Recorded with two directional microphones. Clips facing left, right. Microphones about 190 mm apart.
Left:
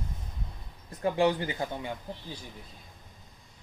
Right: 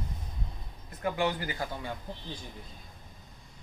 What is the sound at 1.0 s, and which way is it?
Speech, 30° left (ahead or behind).